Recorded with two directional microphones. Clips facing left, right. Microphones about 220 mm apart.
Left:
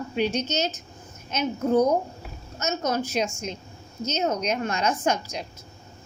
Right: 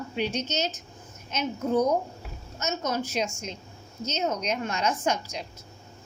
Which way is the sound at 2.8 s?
45° left (ahead or behind).